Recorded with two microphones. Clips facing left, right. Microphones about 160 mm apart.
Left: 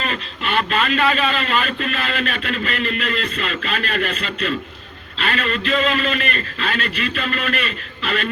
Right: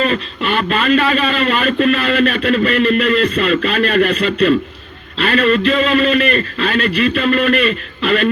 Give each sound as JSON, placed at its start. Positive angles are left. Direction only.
{"t": 0.0, "sound": "a man's voice", "side_deg": -40}